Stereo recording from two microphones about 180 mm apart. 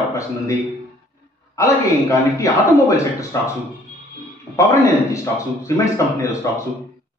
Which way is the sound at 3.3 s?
15° left (ahead or behind).